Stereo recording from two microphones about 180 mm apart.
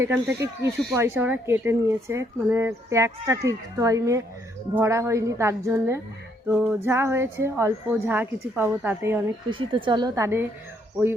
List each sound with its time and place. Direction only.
0.0 s speech: 15° right (ahead or behind)
9.5 s a woman's voice: 30° right (ahead or behind)